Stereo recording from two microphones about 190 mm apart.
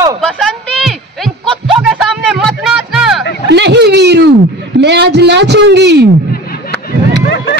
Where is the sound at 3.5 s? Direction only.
65° right (ahead or behind).